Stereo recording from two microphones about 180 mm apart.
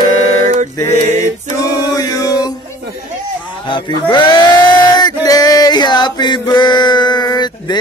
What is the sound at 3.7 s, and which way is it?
Male singing, 25° left (ahead or behind).